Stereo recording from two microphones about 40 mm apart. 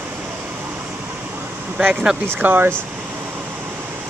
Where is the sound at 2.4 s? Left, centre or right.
Right.